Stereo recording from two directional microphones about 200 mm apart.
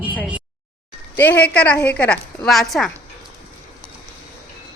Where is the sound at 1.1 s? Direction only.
10° left (ahead or behind).